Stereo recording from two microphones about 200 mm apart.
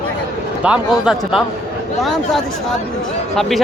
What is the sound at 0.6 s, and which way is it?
Speech, 5° right (ahead or behind).